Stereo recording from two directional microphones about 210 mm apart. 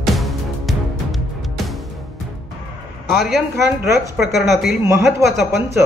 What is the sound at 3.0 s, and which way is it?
A man's voice, centre (ahead or behind).